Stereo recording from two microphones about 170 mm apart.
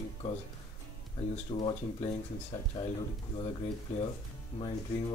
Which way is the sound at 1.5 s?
25° left (ahead or behind).